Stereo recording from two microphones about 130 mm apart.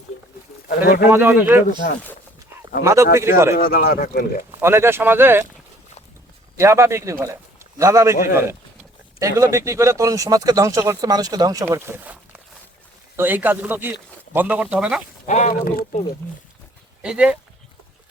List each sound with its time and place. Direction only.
0.8 s speech: 15° right (ahead or behind)
2.8 s speech: 20° right (ahead or behind)
3.5 s speech: 90° left
4.6 s speech: 20° right (ahead or behind)
6.6 s speech: 20° right (ahead or behind)
15.3 s speech: 65° left (ahead or behind)
17.0 s speech: 10° right (ahead or behind)